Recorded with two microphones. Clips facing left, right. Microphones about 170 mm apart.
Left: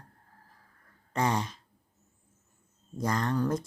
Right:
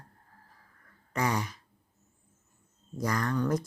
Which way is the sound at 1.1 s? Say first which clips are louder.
Left 1 dB; 25° left (ahead or behind).